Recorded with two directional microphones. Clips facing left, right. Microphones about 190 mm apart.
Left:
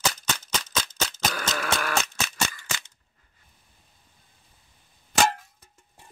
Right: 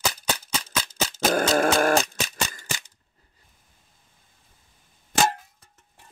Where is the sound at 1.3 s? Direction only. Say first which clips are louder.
Right 9 dB; 45° right (ahead or behind).